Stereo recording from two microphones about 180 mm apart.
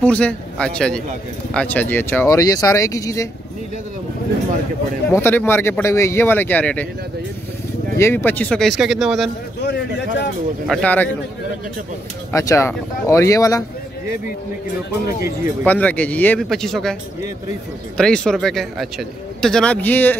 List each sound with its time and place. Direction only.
0.0 s a man's voice: 5° left (ahead or behind)
5.1 s speech: 10° left (ahead or behind)
8.0 s a man's voice: 10° left (ahead or behind)
9.6 s speech: 75° left (ahead or behind)
10.7 s speech: 10° left (ahead or behind)
12.3 s speech: 15° left (ahead or behind)
15.6 s speech: 10° left (ahead or behind)
17.9 s a man's voice: 5° left (ahead or behind)